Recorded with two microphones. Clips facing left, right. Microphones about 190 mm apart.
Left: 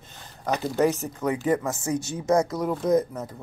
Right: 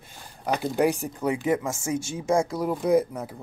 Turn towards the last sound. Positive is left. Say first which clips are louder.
# right 1 dB
turn(degrees=-10)  # may be behind; listen again after turning